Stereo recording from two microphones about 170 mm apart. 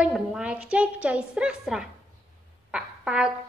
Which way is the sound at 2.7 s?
5° right (ahead or behind).